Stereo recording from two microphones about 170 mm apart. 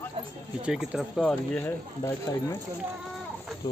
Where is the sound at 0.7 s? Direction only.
5° right (ahead or behind).